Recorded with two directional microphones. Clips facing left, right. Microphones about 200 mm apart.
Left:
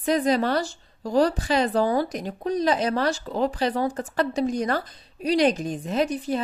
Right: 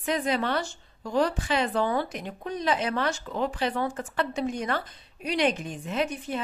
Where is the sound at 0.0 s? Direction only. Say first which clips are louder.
Left 5 dB; 35° left (ahead or behind).